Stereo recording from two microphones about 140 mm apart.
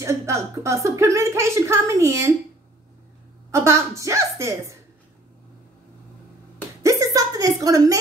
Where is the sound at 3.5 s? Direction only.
20° right (ahead or behind).